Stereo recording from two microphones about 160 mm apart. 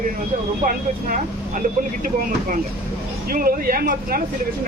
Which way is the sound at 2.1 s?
60° right (ahead or behind).